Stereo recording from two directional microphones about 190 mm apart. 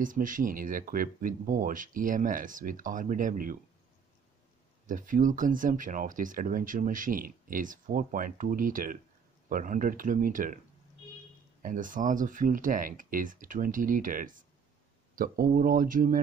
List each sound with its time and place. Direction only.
0.0 s speech: 45° right (ahead or behind)
4.8 s speech: 45° right (ahead or behind)
11.6 s speech: 45° right (ahead or behind)